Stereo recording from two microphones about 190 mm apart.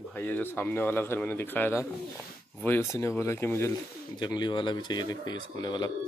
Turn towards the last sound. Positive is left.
turn(degrees=20)  # may be behind; listen again after turning